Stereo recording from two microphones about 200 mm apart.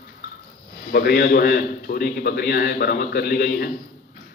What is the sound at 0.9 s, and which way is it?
A man's voice, 50° left (ahead or behind).